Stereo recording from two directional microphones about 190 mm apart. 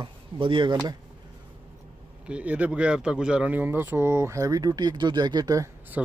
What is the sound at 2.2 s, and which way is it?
Speech, 5° right (ahead or behind).